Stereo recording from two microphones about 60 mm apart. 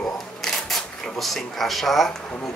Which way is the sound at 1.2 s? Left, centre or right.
Centre.